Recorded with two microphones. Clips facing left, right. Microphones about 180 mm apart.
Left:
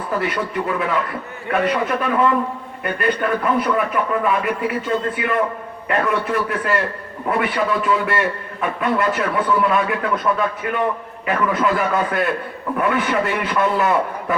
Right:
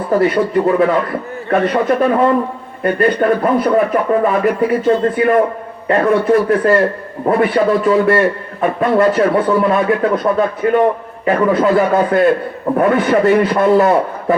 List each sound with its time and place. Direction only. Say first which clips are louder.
0.1 s speech: right 10 dB; 40° right (ahead or behind)